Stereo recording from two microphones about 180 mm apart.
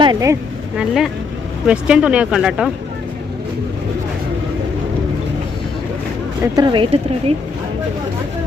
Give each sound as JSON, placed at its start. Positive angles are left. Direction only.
{"t": 0.0, "sound": "speech", "side_deg": -20}
{"t": 0.8, "sound": "speech", "side_deg": 0}
{"t": 6.4, "sound": "speech", "side_deg": -25}